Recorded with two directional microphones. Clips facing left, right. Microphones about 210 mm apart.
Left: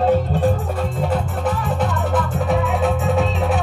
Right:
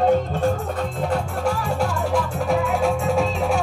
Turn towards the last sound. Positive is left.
turn(degrees=0)  # may be behind; listen again after turning